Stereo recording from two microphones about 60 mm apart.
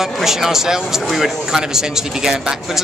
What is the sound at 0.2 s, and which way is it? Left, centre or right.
A man's voice, centre.